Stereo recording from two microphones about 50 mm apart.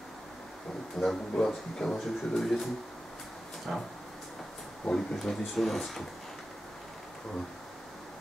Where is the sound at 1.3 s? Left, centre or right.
Centre.